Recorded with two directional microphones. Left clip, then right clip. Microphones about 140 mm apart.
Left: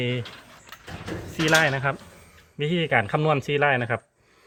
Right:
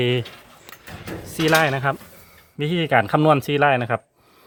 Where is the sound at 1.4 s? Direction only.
35° right (ahead or behind).